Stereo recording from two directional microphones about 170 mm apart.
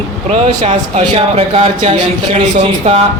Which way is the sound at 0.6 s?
35° right (ahead or behind).